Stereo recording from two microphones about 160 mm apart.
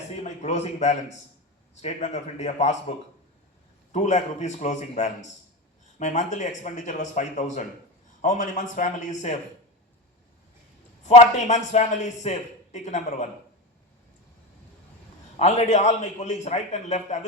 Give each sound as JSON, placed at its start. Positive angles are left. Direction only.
{"t": 0.2, "sound": "a man's voice", "side_deg": 45}
{"t": 3.9, "sound": "a man's voice", "side_deg": 45}
{"t": 11.0, "sound": "a man's voice", "side_deg": 45}
{"t": 15.4, "sound": "a man's voice", "side_deg": 45}